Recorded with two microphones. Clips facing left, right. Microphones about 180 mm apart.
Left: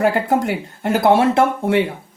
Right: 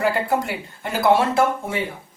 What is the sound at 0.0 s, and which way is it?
Speech, 55° left (ahead or behind).